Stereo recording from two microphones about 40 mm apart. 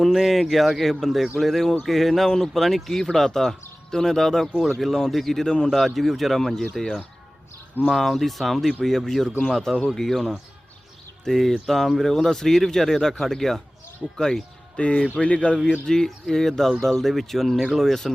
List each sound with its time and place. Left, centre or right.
0.1 s speech: centre
5.7 s speech: centre
14.0 s speech: left
16.0 s speech: centre